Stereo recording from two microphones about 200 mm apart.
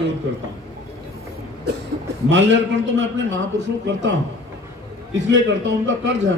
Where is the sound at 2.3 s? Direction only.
65° right (ahead or behind).